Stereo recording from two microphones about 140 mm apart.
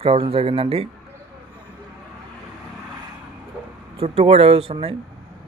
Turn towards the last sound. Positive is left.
turn(degrees=-45)  # may be behind; listen again after turning